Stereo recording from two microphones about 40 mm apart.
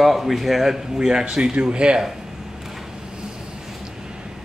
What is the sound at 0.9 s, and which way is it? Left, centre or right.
Speech, centre.